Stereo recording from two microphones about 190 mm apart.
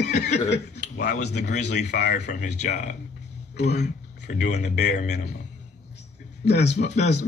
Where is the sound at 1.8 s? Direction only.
60° left (ahead or behind).